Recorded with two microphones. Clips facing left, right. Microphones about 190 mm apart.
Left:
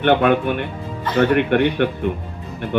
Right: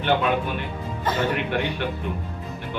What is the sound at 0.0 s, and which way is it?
A woman's voice, 60° left (ahead or behind).